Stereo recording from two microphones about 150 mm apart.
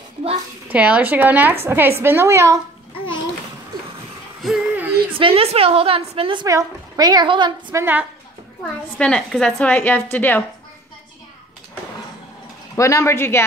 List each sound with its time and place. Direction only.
0.7 s a woman's voice: 10° right (ahead or behind)
4.4 s a sound: centre (ahead or behind)
4.7 s a sound: 10° right (ahead or behind)
5.1 s a woman's voice: 40° right (ahead or behind)
6.4 s speech: 25° right (ahead or behind)
7.7 s a woman's voice: 15° right (ahead or behind)
8.9 s speech: 5° left (ahead or behind)
12.7 s speech: 20° left (ahead or behind)